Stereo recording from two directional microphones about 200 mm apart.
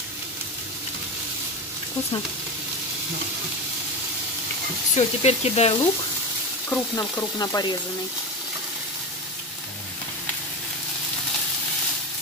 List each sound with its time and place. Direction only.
4.9 s speech: 30° left (ahead or behind)
6.7 s frying: 15° left (ahead or behind)